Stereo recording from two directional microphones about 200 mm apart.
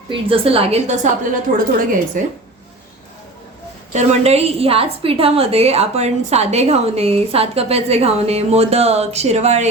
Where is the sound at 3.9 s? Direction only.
30° right (ahead or behind).